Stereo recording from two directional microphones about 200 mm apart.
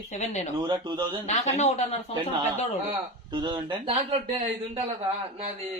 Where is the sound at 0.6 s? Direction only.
20° right (ahead or behind).